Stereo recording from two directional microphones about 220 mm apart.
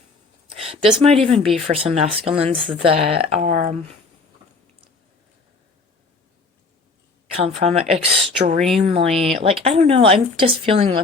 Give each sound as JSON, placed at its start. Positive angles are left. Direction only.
{"t": 0.5, "sound": "speech", "side_deg": -25}
{"t": 1.5, "sound": "speech", "side_deg": 0}
{"t": 1.7, "sound": "speech", "side_deg": -25}
{"t": 2.6, "sound": "speech", "side_deg": 0}
{"t": 2.8, "sound": "speech", "side_deg": -25}
{"t": 7.3, "sound": "speech", "side_deg": -25}